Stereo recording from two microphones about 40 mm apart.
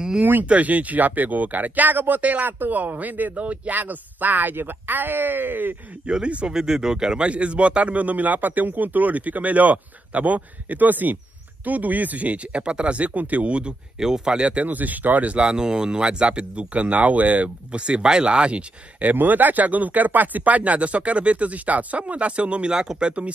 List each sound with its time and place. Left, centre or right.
0.2 s speech: right
0.5 s speech: right
3.3 s speech: right
6.0 s speech: right
6.5 s speech: centre
7.2 s speech: right
13.9 s speech: centre
14.7 s speech: right
15.3 s speech: right
19.1 s speech: right
22.7 s speech: centre